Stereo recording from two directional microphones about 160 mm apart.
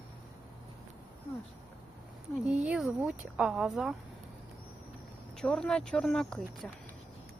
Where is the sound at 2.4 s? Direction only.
5° right (ahead or behind).